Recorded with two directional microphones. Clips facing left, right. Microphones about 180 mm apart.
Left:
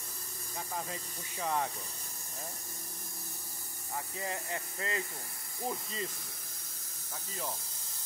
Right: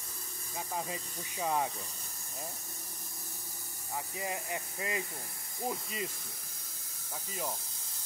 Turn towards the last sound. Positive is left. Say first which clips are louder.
# right 1 dB
turn(degrees=-10)  # may be behind; listen again after turning